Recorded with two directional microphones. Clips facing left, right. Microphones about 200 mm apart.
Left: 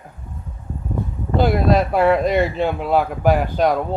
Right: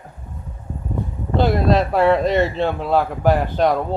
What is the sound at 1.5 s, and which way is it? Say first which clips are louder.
Speech: even; 5° left (ahead or behind).